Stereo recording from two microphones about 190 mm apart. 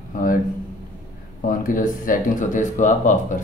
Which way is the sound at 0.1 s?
45° left (ahead or behind).